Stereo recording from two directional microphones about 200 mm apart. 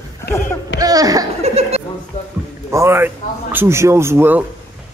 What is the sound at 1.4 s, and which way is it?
Chuckle, 30° right (ahead or behind).